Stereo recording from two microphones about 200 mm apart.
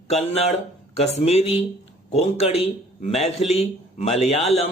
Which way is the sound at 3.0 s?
35° left (ahead or behind).